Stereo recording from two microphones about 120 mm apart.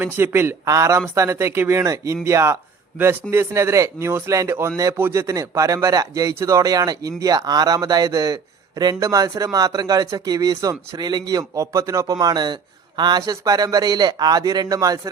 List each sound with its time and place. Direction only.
0.0 s a man's voice: 20° right (ahead or behind)